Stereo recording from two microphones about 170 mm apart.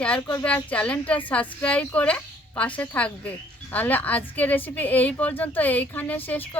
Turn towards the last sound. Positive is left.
turn(degrees=10)  # may be behind; listen again after turning